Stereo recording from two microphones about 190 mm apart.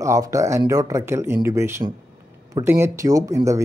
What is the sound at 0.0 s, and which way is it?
Speech, 15° right (ahead or behind).